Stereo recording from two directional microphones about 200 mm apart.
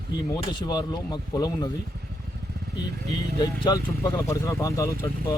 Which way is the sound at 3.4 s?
20° left (ahead or behind).